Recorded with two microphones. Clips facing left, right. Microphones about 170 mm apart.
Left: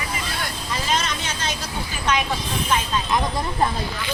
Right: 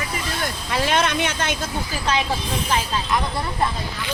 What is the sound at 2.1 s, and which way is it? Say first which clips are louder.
Speech: even; 30° right (ahead or behind).